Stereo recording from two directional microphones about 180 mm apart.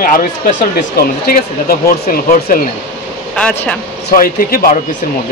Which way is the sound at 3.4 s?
5° left (ahead or behind).